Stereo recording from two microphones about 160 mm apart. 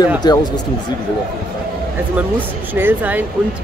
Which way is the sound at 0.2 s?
25° left (ahead or behind).